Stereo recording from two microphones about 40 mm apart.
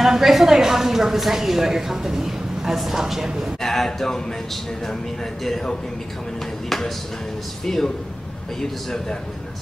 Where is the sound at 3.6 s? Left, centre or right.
Centre.